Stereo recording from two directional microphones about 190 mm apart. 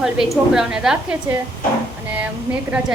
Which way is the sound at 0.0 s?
5° right (ahead or behind).